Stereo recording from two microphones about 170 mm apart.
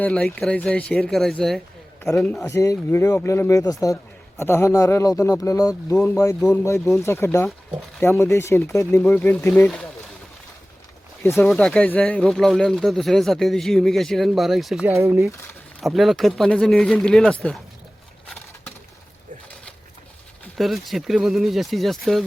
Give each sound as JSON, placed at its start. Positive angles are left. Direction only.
{"t": 0.0, "sound": "a man's voice", "side_deg": 5}
{"t": 11.2, "sound": "a man's voice", "side_deg": 15}
{"t": 11.5, "sound": "speech", "side_deg": 5}
{"t": 14.8, "sound": "speech", "side_deg": -15}
{"t": 15.8, "sound": "speech", "side_deg": 0}
{"t": 20.6, "sound": "speech", "side_deg": 0}